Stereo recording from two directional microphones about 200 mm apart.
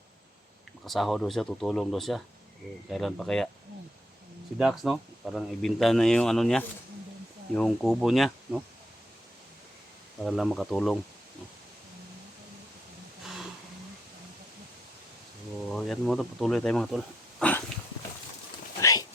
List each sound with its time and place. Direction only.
0.9 s speech: centre (ahead or behind)
4.5 s speech: centre (ahead or behind)
10.2 s speech: centre (ahead or behind)
15.7 s speech: centre (ahead or behind)
17.4 s dog: 5° left (ahead or behind)
18.8 s a sound: 15° left (ahead or behind)